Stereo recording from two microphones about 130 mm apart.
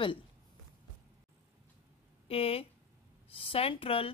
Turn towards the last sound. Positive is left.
turn(degrees=45)  # may be behind; listen again after turning